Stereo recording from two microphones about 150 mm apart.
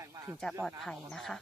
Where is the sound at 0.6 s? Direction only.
5° left (ahead or behind).